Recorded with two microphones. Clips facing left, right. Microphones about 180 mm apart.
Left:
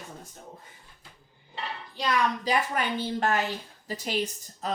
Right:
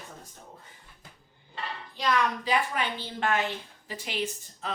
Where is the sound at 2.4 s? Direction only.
45° left (ahead or behind).